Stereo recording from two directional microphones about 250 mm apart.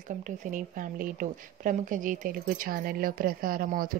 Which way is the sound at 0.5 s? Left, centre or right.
Right.